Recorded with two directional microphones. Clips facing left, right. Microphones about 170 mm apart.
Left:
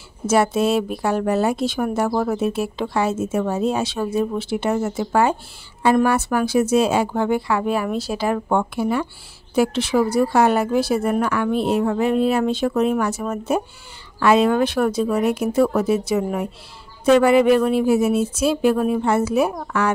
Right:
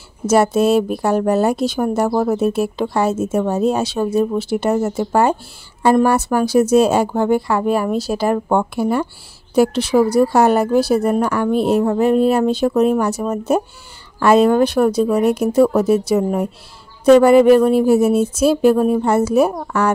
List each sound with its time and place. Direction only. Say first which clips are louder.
0.3 s a woman's voice: right 4 dB; 40° right (ahead or behind)